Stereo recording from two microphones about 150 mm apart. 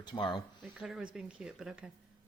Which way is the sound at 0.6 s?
5° right (ahead or behind).